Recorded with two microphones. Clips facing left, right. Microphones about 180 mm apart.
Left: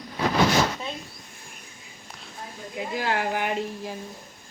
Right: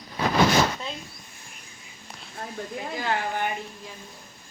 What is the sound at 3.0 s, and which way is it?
Speech, 55° left (ahead or behind).